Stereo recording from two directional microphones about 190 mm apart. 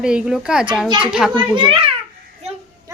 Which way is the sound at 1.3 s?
25° right (ahead or behind).